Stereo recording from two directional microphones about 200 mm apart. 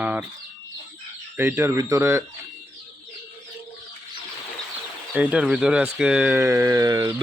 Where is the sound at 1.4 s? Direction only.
10° right (ahead or behind).